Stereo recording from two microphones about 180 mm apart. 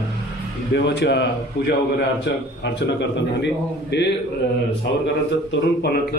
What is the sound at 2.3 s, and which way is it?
Speech, 75° left (ahead or behind).